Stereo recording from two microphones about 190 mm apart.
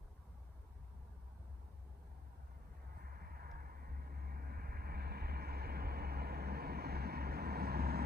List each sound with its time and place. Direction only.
3.0 s vehicle: 50° right (ahead or behind)